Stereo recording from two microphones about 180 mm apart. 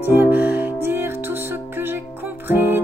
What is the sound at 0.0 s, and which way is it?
Music, 10° right (ahead or behind).